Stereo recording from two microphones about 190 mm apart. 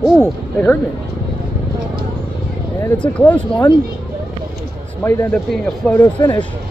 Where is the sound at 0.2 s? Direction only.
10° left (ahead or behind).